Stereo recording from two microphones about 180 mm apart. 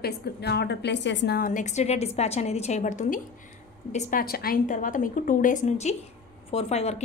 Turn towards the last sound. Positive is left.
turn(degrees=35)  # may be behind; listen again after turning